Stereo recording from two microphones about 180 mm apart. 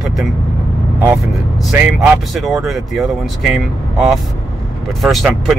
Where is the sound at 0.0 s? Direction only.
Centre (ahead or behind).